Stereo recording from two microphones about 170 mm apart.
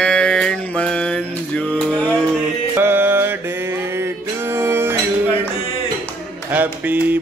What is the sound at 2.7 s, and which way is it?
Music, 15° right (ahead or behind).